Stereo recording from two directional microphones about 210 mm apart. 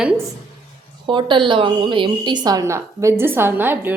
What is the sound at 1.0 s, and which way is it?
A woman's voice, 25° right (ahead or behind).